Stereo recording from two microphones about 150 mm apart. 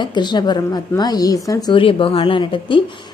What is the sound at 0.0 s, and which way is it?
A woman's voice, 30° left (ahead or behind).